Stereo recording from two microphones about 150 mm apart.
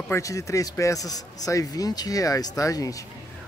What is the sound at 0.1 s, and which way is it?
A man's voice, 20° left (ahead or behind).